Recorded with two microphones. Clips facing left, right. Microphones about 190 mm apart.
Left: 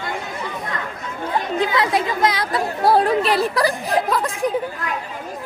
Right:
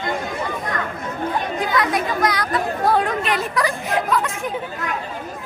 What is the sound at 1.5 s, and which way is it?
Speech, 25° left (ahead or behind).